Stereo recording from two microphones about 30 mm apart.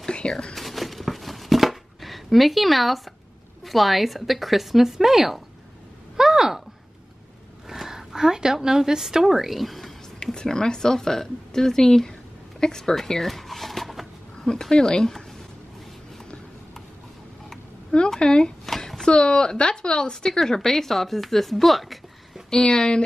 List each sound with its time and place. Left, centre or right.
0.3 s speech: left
0.6 s a sound: centre
3.6 s a woman's voice: centre
6.1 s a sound: centre
7.7 s speech: centre
9.2 s speech: centre
10.2 s speech: left
13.3 s a sound: centre
14.7 s speech: left
18.2 s a woman's voice: left; by 22.0 s centre
22.5 s speech: left